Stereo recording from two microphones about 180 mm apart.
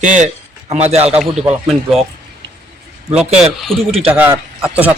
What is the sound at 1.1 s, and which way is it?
Speech, 5° right (ahead or behind).